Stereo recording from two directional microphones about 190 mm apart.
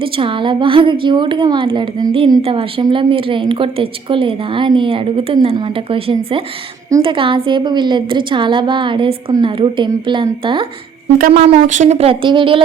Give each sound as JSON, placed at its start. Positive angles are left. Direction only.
{"t": 0.0, "sound": "a woman's voice", "side_deg": -25}